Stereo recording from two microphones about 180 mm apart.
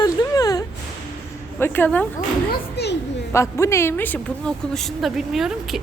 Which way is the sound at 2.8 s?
65° left (ahead or behind).